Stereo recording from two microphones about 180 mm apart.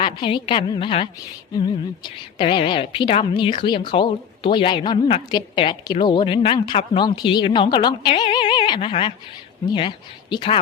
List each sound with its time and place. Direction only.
0.0 s a woman's voice: 25° left (ahead or behind)